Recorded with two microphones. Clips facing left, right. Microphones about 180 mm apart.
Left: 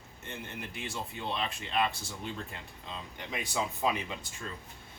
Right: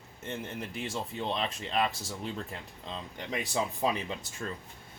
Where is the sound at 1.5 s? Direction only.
40° right (ahead or behind).